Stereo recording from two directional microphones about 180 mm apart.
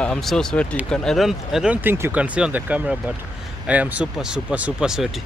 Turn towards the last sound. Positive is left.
turn(degrees=-5)  # may be behind; listen again after turning